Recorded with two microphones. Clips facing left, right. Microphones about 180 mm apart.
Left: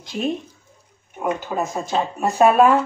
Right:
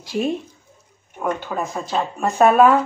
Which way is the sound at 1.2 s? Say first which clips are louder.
Left 1 dB; 20° left (ahead or behind).